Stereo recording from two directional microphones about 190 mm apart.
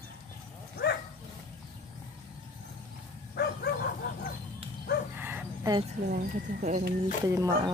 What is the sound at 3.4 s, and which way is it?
Bow-wow, 60° left (ahead or behind).